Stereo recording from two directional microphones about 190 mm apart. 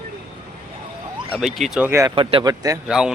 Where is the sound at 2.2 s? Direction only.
30° right (ahead or behind).